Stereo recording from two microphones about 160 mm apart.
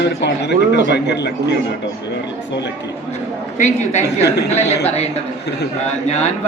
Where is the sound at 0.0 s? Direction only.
90° left.